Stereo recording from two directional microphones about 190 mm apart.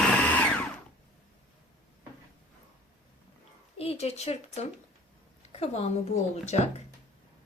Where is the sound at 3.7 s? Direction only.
30° left (ahead or behind).